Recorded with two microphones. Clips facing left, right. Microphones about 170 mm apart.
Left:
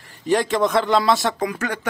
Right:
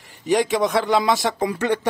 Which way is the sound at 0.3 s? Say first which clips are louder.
Even; 15° right (ahead or behind).